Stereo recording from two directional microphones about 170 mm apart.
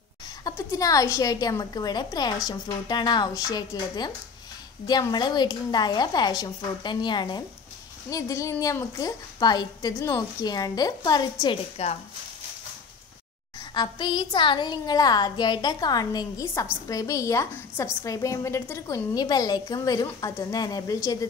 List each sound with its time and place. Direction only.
0.4 s a woman's voice: 20° left (ahead or behind)
11.8 s speech: 40° left (ahead or behind)
13.7 s a woman's voice: 25° left (ahead or behind)